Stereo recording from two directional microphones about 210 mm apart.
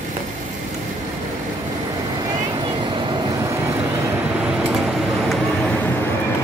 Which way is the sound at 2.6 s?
20° right (ahead or behind).